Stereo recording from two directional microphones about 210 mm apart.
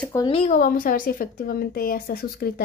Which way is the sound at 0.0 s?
15° left (ahead or behind).